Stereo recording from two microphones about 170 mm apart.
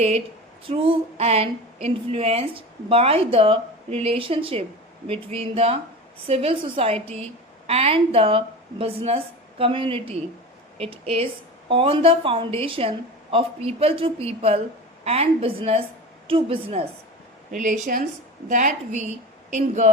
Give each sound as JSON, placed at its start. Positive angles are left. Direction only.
{"t": 0.7, "sound": "speech", "side_deg": -35}
{"t": 17.6, "sound": "a woman's voice", "side_deg": -50}